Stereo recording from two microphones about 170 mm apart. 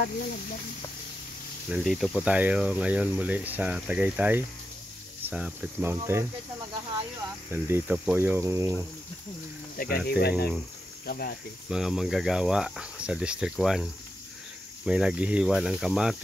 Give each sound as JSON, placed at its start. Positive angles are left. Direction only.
{"t": 1.7, "sound": "speech", "side_deg": 0}
{"t": 7.5, "sound": "speech", "side_deg": -15}
{"t": 9.8, "sound": "speech", "side_deg": 65}
{"t": 11.7, "sound": "speech", "side_deg": 0}
{"t": 14.9, "sound": "speech", "side_deg": -5}